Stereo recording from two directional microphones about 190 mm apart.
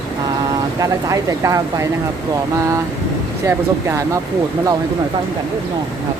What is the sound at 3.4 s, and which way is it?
Speech, 15° right (ahead or behind).